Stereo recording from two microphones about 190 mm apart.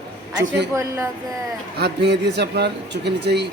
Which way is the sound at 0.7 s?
15° right (ahead or behind).